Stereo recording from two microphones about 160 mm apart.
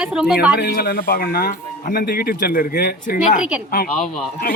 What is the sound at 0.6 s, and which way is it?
Speech, 75° left (ahead or behind).